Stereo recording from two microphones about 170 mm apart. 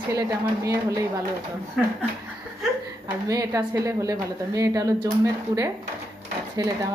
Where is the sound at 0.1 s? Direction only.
20° right (ahead or behind).